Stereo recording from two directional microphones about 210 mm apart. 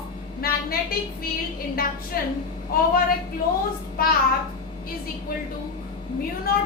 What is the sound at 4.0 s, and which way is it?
Speech, 45° left (ahead or behind).